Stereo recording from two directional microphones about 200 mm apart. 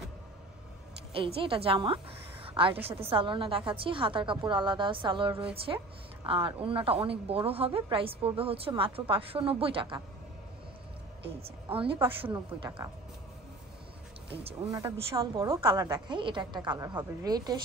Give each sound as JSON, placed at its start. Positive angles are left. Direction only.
{"t": 1.1, "sound": "a woman's voice", "side_deg": -25}
{"t": 11.4, "sound": "a woman's voice", "side_deg": -25}
{"t": 14.7, "sound": "a woman's voice", "side_deg": -20}